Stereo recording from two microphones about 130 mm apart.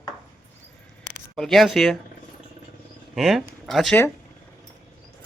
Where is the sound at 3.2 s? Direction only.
Centre (ahead or behind).